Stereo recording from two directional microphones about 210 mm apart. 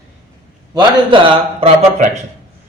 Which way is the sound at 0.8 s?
25° right (ahead or behind).